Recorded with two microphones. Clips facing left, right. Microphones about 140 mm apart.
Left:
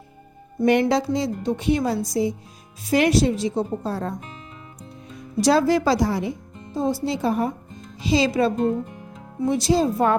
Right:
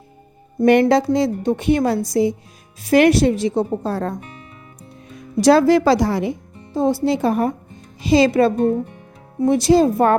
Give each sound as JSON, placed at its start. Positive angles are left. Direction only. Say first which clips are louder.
{"t": 0.6, "sound": "a woman's voice", "louder": "right 5 dB", "side_deg": -60}
{"t": 5.4, "sound": "a woman's voice", "louder": "right 5 dB", "side_deg": -65}